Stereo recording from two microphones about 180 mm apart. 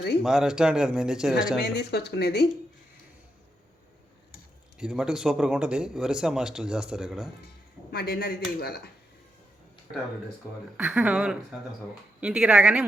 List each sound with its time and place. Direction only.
0.2 s speech: 5° right (ahead or behind)
1.5 s speech: 65° left (ahead or behind)
4.8 s speech: 5° right (ahead or behind)
7.4 s speech: 60° left (ahead or behind)
10.8 s speech: 5° right (ahead or behind)